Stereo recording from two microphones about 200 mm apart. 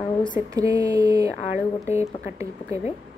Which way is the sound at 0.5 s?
15° right (ahead or behind).